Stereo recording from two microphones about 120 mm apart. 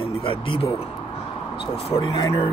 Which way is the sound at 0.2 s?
50° left (ahead or behind).